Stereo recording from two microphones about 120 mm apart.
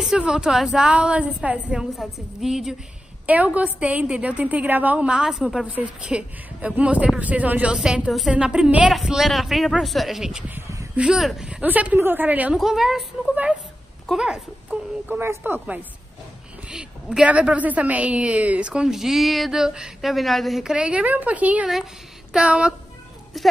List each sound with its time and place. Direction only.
0.0 s a woman's voice: 5° right (ahead or behind)
11.6 s a woman's voice: 15° right (ahead or behind)
12.5 s a woman's voice: centre (ahead or behind)
15.1 s a woman's voice: 20° right (ahead or behind)